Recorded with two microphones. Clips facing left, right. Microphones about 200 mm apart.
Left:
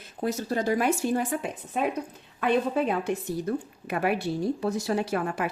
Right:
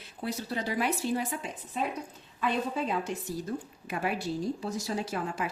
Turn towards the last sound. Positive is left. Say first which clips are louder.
# left 5 dB
turn(degrees=60)  # may be behind; listen again after turning